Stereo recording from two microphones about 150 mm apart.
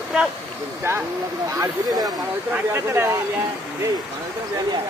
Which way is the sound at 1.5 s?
25° right (ahead or behind).